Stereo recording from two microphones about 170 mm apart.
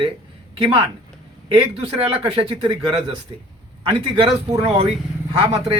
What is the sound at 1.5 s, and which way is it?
A man's voice, 35° right (ahead or behind).